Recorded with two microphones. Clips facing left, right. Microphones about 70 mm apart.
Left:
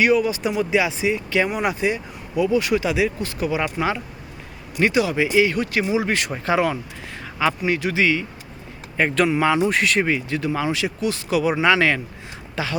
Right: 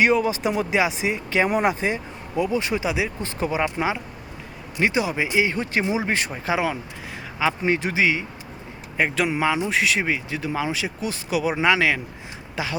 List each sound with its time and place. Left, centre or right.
0.0 s speech: right
3.2 s speech: right
3.6 s speech: centre
6.3 s speech: centre
7.6 s speech: right
7.9 s speech: centre